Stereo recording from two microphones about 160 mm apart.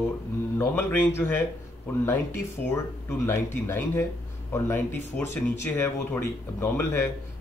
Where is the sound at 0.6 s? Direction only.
15° left (ahead or behind).